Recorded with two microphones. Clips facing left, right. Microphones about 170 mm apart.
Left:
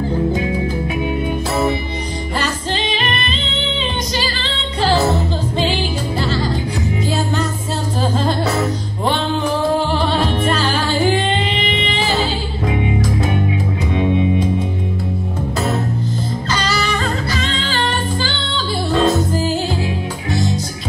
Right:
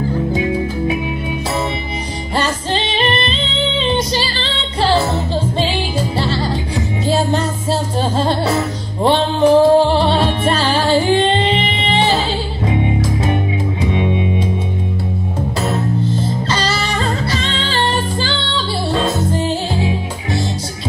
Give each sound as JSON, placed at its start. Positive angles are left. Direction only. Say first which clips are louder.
{"t": 2.3, "sound": "music", "louder": "right 4 dB", "side_deg": -30}
{"t": 16.4, "sound": "music", "louder": "right 1 dB", "side_deg": -30}